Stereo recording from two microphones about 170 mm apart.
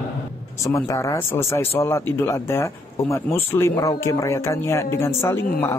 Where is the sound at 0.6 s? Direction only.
15° left (ahead or behind).